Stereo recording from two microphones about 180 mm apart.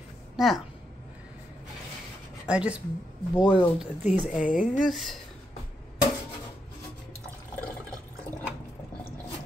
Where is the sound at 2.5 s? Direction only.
5° right (ahead or behind).